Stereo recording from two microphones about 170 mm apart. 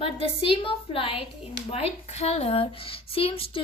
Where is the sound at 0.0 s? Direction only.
35° left (ahead or behind).